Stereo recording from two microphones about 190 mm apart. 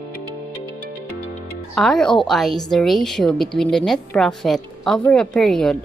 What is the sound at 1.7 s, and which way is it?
A woman's voice, 5° left (ahead or behind).